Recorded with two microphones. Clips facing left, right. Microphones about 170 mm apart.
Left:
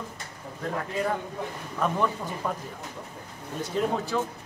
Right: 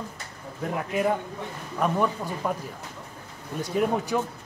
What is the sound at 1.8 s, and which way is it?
Speech, 10° right (ahead or behind).